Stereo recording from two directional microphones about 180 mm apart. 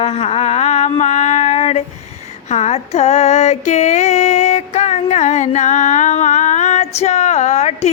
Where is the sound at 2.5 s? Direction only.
35° left (ahead or behind).